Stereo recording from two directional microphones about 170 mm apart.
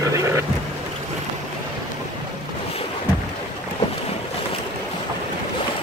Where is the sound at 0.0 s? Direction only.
20° right (ahead or behind).